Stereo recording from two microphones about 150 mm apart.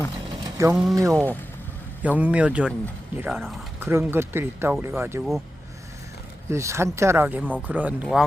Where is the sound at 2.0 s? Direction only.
10° right (ahead or behind).